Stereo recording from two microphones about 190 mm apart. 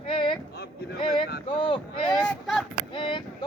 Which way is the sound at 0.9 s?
25° left (ahead or behind).